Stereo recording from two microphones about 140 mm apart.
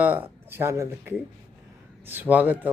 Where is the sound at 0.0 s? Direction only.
15° right (ahead or behind).